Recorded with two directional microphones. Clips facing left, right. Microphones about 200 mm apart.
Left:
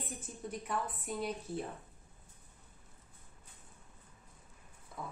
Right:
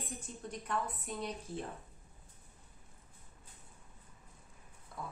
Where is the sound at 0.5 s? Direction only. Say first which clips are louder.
Even; 5° left (ahead or behind).